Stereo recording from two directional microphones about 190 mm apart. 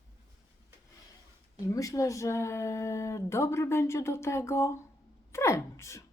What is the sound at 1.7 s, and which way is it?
Speech, 15° left (ahead or behind).